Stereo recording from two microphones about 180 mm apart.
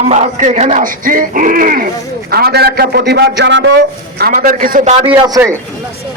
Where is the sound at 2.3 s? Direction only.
60° right (ahead or behind); by 5.1 s 40° right (ahead or behind).